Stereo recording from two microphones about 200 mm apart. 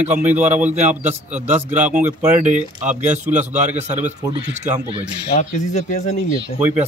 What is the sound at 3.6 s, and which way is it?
Speech, 35° right (ahead or behind).